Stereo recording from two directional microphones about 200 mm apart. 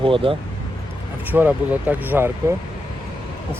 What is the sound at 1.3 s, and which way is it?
Speech, 10° right (ahead or behind).